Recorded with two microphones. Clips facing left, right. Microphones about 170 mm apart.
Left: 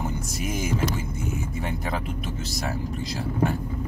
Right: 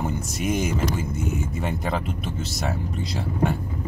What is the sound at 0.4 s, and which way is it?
Speech, centre (ahead or behind).